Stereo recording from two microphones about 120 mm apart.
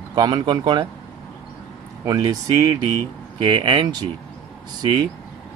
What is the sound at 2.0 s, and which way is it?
Speech, 35° right (ahead or behind).